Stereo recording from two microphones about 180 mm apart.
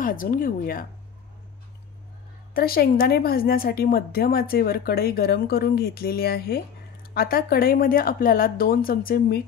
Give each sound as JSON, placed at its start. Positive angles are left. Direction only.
{"t": 0.0, "sound": "speech", "side_deg": 50}
{"t": 2.5, "sound": "a woman's voice", "side_deg": 55}